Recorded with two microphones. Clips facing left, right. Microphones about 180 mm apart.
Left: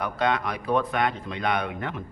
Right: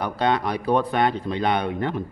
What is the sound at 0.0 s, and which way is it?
Speech, 35° right (ahead or behind).